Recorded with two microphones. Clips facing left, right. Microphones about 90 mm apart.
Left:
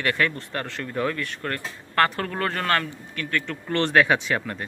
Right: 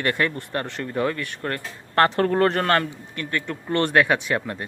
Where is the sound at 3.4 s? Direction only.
15° right (ahead or behind).